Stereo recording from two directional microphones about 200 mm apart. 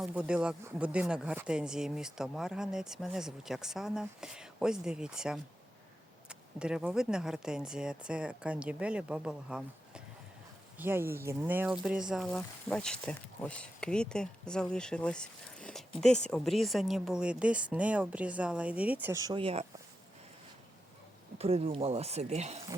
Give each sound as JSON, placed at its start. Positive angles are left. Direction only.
{"t": 0.0, "sound": "speech", "side_deg": -5}
{"t": 21.3, "sound": "speech", "side_deg": -30}